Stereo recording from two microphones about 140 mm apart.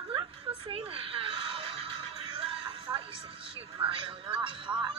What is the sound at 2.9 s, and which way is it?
Music, 25° right (ahead or behind).